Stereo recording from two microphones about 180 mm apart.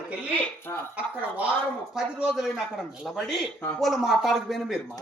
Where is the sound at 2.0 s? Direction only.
Centre (ahead or behind).